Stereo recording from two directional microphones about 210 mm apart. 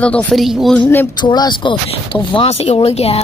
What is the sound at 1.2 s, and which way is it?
Speech, 20° left (ahead or behind).